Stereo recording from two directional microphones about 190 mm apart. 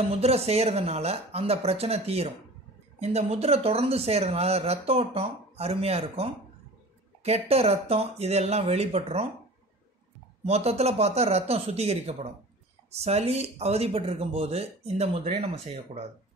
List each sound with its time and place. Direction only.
0.1 s speech: 30° right (ahead or behind)
10.4 s speech: 35° right (ahead or behind)